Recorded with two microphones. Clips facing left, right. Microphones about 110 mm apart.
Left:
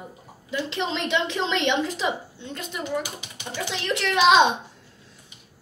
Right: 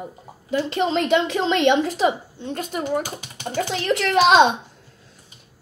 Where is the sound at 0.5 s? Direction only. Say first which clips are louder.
Right 7 dB; 45° right (ahead or behind).